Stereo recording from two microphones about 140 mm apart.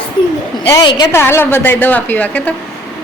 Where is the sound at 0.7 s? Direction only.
30° left (ahead or behind).